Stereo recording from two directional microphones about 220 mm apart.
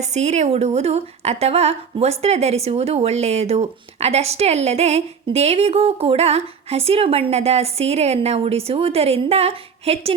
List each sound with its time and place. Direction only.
0.0 s a woman's voice: 30° right (ahead or behind)